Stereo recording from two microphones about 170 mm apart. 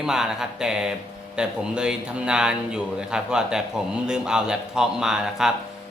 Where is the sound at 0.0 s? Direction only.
5° right (ahead or behind).